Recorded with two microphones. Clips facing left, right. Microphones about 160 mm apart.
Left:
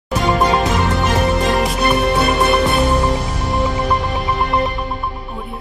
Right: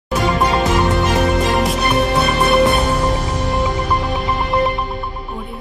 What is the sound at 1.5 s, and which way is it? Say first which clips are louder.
Music: even; centre (ahead or behind).